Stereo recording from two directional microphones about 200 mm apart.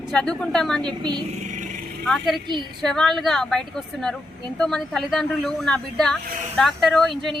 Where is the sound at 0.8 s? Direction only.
20° right (ahead or behind).